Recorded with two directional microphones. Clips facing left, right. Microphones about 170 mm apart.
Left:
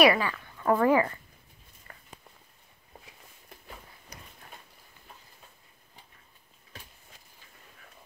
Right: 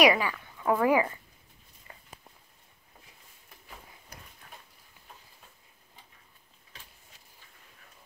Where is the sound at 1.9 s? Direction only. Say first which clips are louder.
Right 1 dB; 20° right (ahead or behind).